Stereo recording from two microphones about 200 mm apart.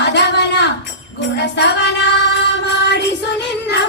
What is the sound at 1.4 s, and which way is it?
Music, 55° left (ahead or behind).